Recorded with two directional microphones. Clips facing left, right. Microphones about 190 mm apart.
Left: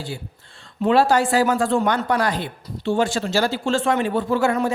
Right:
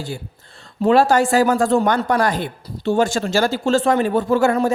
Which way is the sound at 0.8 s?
45° right (ahead or behind).